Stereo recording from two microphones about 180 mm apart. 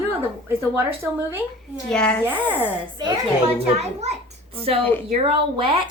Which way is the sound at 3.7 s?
35° right (ahead or behind).